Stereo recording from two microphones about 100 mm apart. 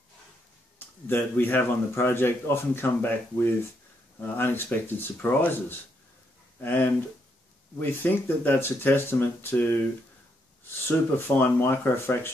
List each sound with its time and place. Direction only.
0.7 s speech: 20° left (ahead or behind)
11.1 s speech: 20° left (ahead or behind)